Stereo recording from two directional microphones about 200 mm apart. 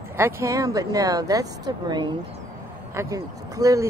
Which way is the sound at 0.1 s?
15° right (ahead or behind).